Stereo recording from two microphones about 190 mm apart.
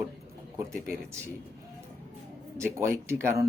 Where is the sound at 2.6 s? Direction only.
15° right (ahead or behind).